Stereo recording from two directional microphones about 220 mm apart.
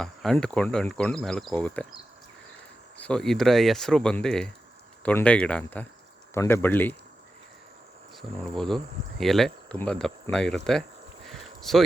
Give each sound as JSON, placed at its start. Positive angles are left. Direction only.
{"t": 0.0, "sound": "speech", "side_deg": 0}
{"t": 3.0, "sound": "speech", "side_deg": 5}
{"t": 8.1, "sound": "speech", "side_deg": 0}
{"t": 11.3, "sound": "a sound", "side_deg": 0}